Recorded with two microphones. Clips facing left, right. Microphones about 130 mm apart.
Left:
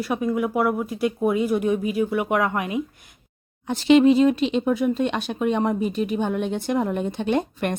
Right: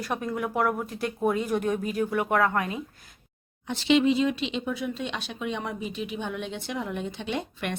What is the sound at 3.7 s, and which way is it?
Speech, 45° left (ahead or behind).